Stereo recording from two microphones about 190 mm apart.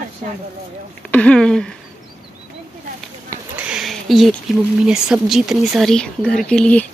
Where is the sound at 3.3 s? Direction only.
10° right (ahead or behind).